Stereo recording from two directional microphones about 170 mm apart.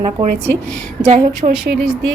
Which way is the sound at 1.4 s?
35° right (ahead or behind).